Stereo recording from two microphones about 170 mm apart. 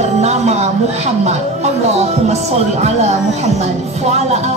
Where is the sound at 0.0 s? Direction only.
40° right (ahead or behind).